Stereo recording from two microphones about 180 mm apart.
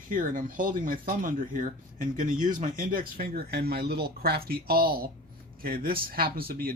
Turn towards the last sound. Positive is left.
turn(degrees=-55)  # may be behind; listen again after turning